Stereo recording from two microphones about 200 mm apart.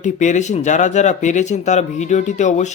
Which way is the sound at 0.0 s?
35° left (ahead or behind).